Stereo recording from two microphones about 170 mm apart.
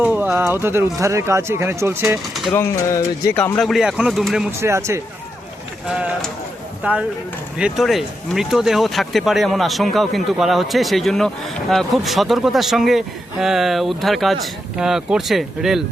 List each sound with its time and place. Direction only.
0.0 s speech: 10° right (ahead or behind)
2.5 s speech: 20° left (ahead or behind)
3.7 s a man's voice: 5° right (ahead or behind)
4.6 s speech: 15° right (ahead or behind)
5.8 s a man's voice: 5° right (ahead or behind)